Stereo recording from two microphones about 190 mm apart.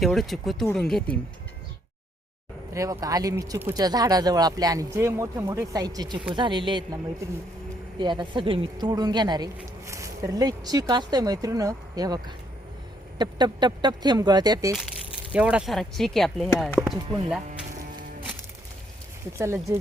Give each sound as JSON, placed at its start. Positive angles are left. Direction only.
{"t": 0.0, "sound": "speech", "side_deg": 0}
{"t": 2.7, "sound": "speech", "side_deg": -15}
{"t": 15.3, "sound": "speech", "side_deg": -5}
{"t": 17.5, "sound": "a sound", "side_deg": -45}
{"t": 19.4, "sound": "speech", "side_deg": -15}